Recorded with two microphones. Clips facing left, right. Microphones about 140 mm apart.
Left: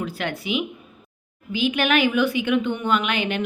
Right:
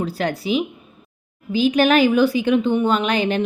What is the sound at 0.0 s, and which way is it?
A woman's voice, 35° right (ahead or behind).